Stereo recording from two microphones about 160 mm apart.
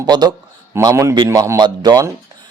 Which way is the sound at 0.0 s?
25° right (ahead or behind).